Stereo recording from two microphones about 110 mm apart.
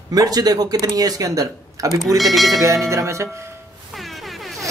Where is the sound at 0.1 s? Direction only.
35° right (ahead or behind).